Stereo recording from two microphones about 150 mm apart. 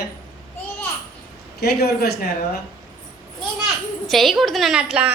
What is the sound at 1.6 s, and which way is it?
Speech, 90° left.